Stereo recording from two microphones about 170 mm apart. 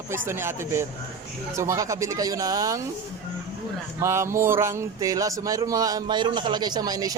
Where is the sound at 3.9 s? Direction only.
15° right (ahead or behind).